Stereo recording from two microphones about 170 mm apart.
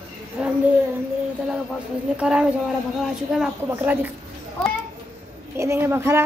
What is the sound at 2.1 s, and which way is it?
A woman's voice, 5° right (ahead or behind).